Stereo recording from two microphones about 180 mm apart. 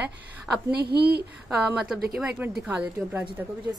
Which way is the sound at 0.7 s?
65° right (ahead or behind).